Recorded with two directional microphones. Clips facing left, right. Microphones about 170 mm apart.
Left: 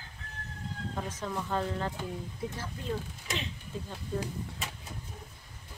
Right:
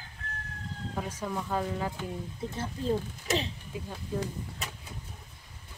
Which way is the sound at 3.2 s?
35° right (ahead or behind).